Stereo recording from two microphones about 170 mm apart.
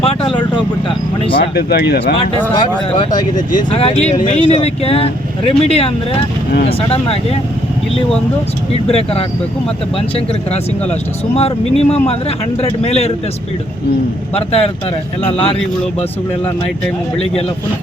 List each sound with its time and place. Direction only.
0.0 s a sound: 35° left (ahead or behind)
1.5 s speech: 75° left (ahead or behind)
2.5 s speech: 25° left (ahead or behind)
8.7 s speech: 35° left (ahead or behind)
11.3 s speech: 35° left (ahead or behind)
14.3 s speech: 35° left (ahead or behind)